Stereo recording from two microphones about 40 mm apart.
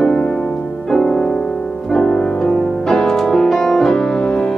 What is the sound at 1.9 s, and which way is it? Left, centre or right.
Music, centre.